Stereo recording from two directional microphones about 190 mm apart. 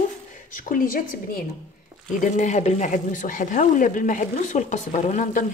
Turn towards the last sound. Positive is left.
turn(degrees=40)  # may be behind; listen again after turning